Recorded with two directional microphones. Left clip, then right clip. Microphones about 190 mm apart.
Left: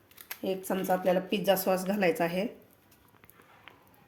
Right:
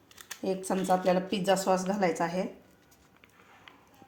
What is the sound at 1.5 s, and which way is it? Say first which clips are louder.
Speech: right 1 dB; 40° left (ahead or behind).